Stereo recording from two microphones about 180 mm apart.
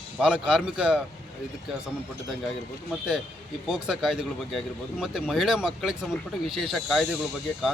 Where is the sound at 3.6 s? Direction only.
5° right (ahead or behind).